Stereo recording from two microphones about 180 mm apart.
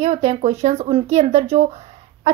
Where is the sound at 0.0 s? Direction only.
35° right (ahead or behind).